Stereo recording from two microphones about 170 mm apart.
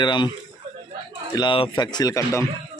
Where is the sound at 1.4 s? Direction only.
30° left (ahead or behind).